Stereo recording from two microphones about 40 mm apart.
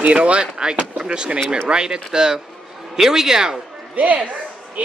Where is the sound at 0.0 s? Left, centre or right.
Right; by 3.5 s centre.